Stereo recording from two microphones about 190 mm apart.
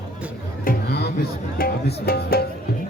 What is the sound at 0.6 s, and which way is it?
Music, 55° left (ahead or behind).